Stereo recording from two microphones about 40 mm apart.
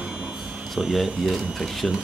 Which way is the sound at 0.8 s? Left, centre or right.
Centre.